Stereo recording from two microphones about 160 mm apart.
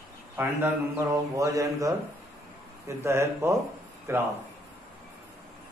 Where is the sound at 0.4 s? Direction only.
15° right (ahead or behind).